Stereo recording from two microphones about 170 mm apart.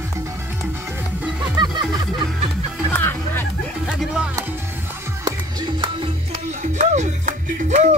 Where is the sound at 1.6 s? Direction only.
25° right (ahead or behind).